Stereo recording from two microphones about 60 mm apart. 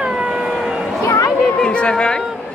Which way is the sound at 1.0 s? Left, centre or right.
Left.